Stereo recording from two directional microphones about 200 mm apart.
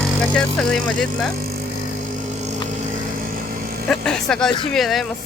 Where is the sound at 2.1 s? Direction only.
35° right (ahead or behind).